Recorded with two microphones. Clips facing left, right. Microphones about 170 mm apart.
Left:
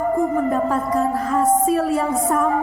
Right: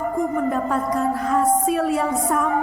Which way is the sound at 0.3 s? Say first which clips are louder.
Left 2 dB; centre (ahead or behind).